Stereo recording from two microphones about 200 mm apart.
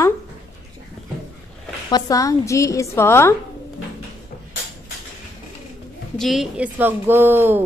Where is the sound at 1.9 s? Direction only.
15° left (ahead or behind).